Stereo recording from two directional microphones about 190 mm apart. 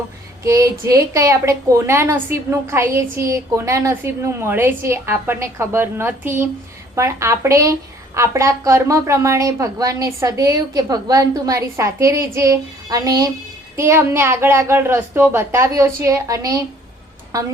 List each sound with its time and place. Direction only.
0.4 s a woman's voice: 15° right (ahead or behind)